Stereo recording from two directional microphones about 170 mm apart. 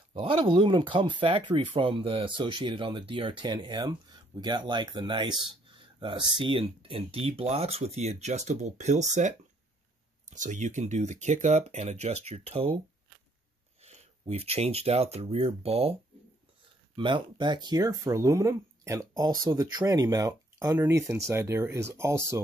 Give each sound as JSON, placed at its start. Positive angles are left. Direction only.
{"t": 0.1, "sound": "speech", "side_deg": -30}
{"t": 10.3, "sound": "speech", "side_deg": -45}
{"t": 13.8, "sound": "speech", "side_deg": -40}